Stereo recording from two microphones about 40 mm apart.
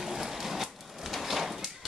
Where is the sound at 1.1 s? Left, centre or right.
Centre.